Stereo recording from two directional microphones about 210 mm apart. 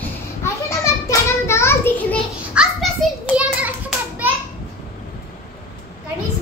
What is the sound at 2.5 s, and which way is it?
Children playing, centre (ahead or behind).